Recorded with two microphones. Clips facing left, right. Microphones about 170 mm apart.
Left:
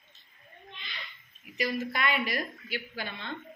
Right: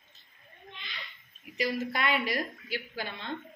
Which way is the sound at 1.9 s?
30° right (ahead or behind).